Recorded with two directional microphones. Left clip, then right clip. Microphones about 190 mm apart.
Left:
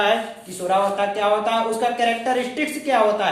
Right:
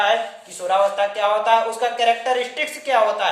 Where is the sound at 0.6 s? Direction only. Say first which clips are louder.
Right 1 dB; 30° right (ahead or behind).